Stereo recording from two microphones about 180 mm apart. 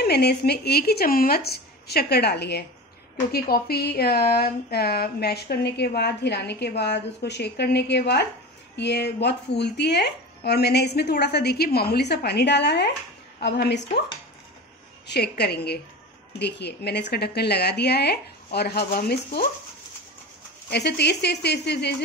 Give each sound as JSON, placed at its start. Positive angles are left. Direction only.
{"t": 0.0, "sound": "speech", "side_deg": 65}
{"t": 15.0, "sound": "speech", "side_deg": 65}
{"t": 20.7, "sound": "speech", "side_deg": 65}